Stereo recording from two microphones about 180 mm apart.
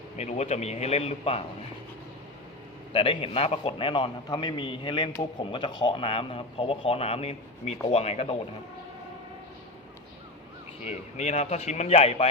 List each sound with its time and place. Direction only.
0.2 s a man's voice: 40° left (ahead or behind)
2.9 s a man's voice: 30° left (ahead or behind)
10.8 s a man's voice: 40° left (ahead or behind)